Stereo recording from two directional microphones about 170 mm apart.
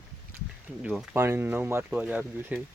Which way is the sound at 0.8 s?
5° right (ahead or behind).